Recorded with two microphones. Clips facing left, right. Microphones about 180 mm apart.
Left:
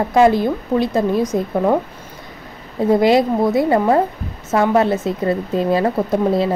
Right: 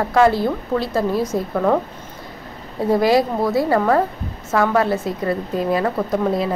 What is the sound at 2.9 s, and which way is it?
A woman's voice, 20° left (ahead or behind).